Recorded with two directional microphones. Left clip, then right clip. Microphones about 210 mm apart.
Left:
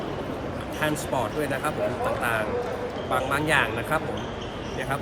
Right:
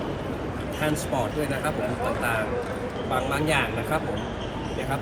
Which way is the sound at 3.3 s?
5° left (ahead or behind).